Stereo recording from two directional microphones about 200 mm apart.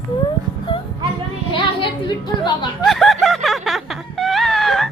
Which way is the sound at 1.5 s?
25° left (ahead or behind).